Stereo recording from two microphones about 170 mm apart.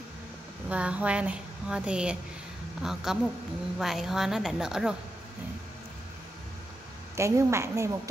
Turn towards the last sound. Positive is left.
turn(degrees=-15)  # may be behind; listen again after turning